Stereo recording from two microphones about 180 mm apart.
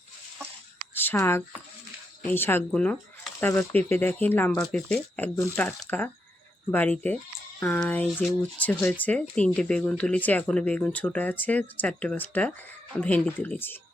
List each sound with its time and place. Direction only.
0.9 s speech: 10° left (ahead or behind)